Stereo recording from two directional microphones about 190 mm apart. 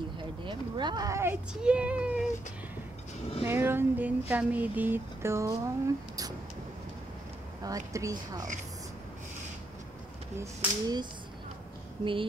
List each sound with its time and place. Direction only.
0.2 s speech: 25° right (ahead or behind); by 2.2 s 5° right (ahead or behind)
3.4 s speech: 10° right (ahead or behind)
7.6 s speech: 20° right (ahead or behind)
10.4 s speech: 20° right (ahead or behind)